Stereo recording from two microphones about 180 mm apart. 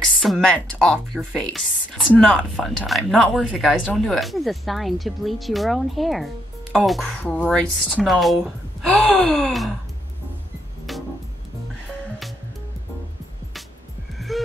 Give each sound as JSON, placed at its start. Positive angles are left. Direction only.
{"t": 0.0, "sound": "a woman's voice", "side_deg": 0}
{"t": 10.9, "sound": "music", "side_deg": 0}
{"t": 14.1, "sound": "music", "side_deg": 0}